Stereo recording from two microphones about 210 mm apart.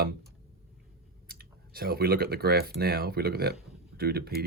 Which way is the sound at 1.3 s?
45° right (ahead or behind).